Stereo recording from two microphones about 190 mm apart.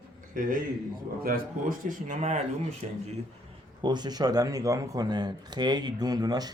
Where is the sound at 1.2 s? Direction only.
50° right (ahead or behind); by 3.0 s 35° right (ahead or behind).